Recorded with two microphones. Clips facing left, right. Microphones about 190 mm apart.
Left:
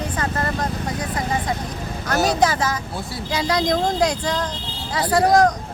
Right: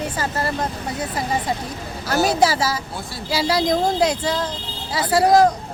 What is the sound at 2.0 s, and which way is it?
Speech, 10° right (ahead or behind).